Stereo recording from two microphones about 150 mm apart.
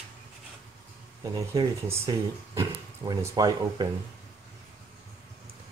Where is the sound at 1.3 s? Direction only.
25° right (ahead or behind).